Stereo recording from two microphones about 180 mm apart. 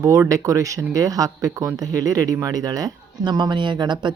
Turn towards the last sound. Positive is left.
turn(degrees=-25)  # may be behind; listen again after turning